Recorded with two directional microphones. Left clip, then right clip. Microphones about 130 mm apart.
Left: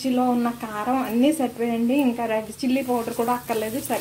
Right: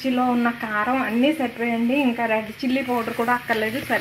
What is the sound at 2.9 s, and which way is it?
Speech, 5° left (ahead or behind).